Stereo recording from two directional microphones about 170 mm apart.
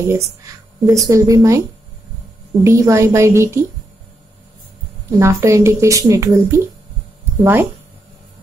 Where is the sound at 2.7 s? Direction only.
15° right (ahead or behind).